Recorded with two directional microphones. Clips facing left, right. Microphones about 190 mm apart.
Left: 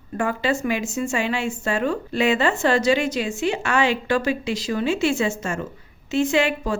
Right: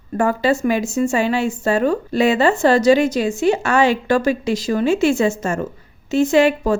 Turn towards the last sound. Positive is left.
turn(degrees=-40)  # may be behind; listen again after turning